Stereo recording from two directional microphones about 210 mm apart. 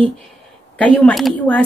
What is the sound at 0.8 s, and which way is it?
Speech, 5° left (ahead or behind).